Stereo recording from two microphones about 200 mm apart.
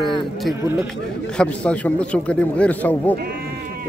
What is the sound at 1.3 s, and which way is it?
A man's voice, 5° left (ahead or behind).